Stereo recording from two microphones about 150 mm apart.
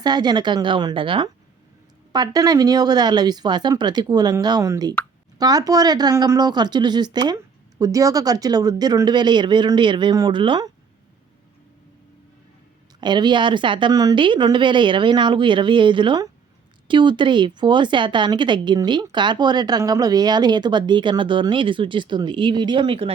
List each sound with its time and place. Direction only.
0.0 s speech: 30° right (ahead or behind)
13.0 s speech: 30° right (ahead or behind)